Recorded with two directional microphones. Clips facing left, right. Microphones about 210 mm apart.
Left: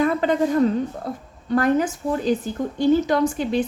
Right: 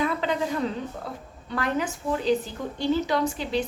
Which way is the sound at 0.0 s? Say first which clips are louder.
Left 6 dB; 50° left (ahead or behind).